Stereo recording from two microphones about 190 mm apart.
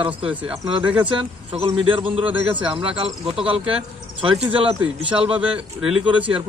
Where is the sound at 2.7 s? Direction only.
30° right (ahead or behind).